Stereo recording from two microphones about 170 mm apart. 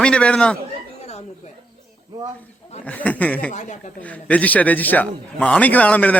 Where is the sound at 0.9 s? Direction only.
40° left (ahead or behind).